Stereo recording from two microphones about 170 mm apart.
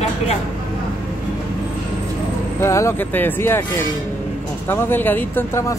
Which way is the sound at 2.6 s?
15° left (ahead or behind).